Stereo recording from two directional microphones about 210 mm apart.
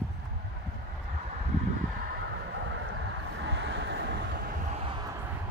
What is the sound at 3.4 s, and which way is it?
Vehicle, 60° right (ahead or behind).